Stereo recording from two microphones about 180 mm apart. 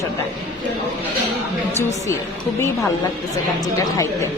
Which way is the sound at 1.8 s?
15° left (ahead or behind).